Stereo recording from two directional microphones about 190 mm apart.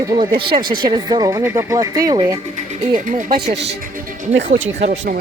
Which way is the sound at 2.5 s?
40° right (ahead or behind).